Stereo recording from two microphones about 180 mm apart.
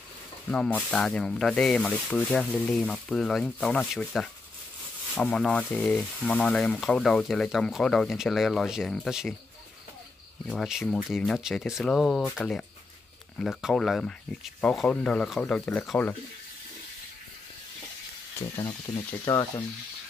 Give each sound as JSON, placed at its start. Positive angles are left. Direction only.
{"t": 0.5, "sound": "speech", "side_deg": 5}
{"t": 10.4, "sound": "speech", "side_deg": 0}
{"t": 18.4, "sound": "speech", "side_deg": 30}